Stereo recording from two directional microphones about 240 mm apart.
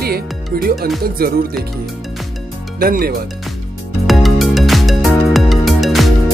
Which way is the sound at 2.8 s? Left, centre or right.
Right.